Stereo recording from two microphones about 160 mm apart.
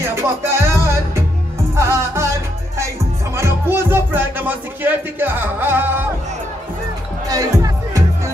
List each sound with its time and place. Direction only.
0.0 s music: 15° right (ahead or behind)
3.3 s music: 15° right (ahead or behind)
7.2 s music: 20° right (ahead or behind)